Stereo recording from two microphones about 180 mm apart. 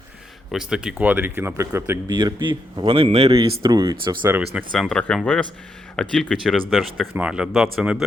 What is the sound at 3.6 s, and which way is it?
Speech, 20° right (ahead or behind).